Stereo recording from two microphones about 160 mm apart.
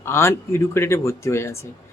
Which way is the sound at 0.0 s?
15° left (ahead or behind).